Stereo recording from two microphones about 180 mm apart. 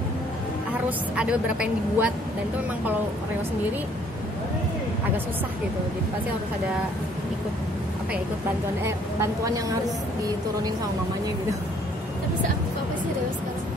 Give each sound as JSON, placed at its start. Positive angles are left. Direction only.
{"t": 0.8, "sound": "a woman's voice", "side_deg": -5}
{"t": 8.8, "sound": "a woman's voice", "side_deg": -15}